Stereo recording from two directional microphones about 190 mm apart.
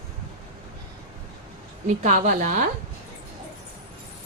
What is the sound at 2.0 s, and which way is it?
Speech, 40° right (ahead or behind).